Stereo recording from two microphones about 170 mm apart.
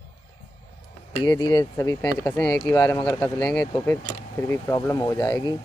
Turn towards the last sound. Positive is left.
turn(degrees=25)  # may be behind; listen again after turning